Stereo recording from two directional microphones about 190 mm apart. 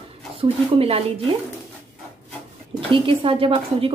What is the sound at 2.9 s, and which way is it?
Speech, 30° right (ahead or behind).